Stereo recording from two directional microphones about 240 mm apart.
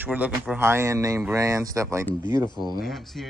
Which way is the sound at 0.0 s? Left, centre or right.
Centre.